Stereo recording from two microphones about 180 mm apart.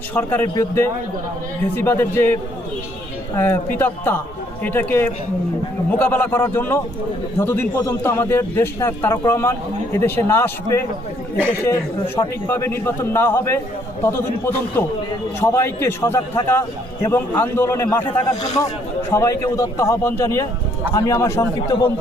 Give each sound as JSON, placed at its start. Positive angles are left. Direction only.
{"t": 0.1, "sound": "a man's voice", "side_deg": 10}